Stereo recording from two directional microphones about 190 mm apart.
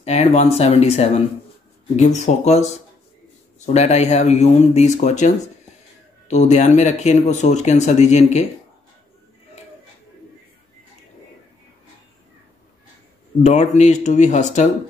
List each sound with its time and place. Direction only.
0.0 s speech: 35° left (ahead or behind)
13.4 s speech: 35° left (ahead or behind)